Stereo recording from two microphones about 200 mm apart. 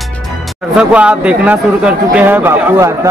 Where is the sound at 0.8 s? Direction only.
5° right (ahead or behind).